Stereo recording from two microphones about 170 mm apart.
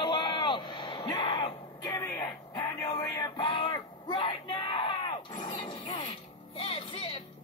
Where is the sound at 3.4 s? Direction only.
30° left (ahead or behind).